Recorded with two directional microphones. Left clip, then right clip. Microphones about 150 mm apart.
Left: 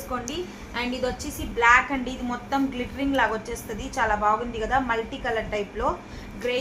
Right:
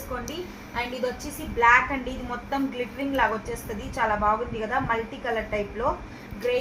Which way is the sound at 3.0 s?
25° left (ahead or behind).